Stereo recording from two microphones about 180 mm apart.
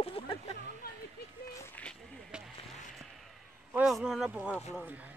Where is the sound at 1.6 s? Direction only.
5° left (ahead or behind).